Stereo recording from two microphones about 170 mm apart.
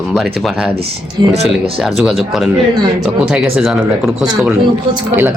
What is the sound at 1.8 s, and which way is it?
Speech, centre (ahead or behind).